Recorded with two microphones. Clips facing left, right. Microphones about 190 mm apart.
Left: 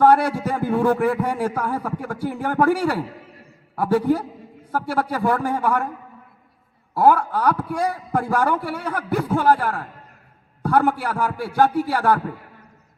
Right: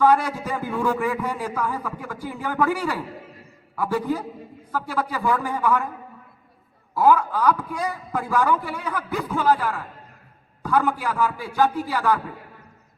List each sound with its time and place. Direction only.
0.0 s a man's voice: 60° left (ahead or behind)
7.0 s a man's voice: 60° left (ahead or behind)